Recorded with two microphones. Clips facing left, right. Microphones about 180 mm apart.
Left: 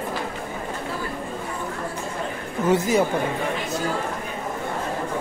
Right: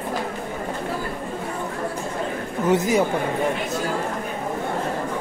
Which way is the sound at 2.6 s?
15° right (ahead or behind).